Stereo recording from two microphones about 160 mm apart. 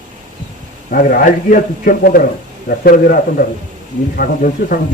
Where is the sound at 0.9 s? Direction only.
60° left (ahead or behind).